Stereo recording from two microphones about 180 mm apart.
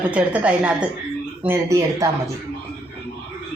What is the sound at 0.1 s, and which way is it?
Speech, 5° right (ahead or behind).